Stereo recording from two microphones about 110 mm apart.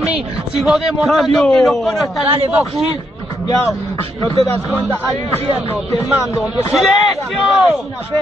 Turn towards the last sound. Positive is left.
turn(degrees=0)  # may be behind; listen again after turning